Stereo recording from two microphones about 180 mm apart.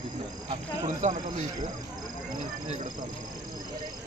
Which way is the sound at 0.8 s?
45° right (ahead or behind).